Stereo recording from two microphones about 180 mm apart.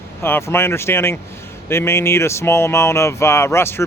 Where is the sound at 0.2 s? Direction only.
15° left (ahead or behind).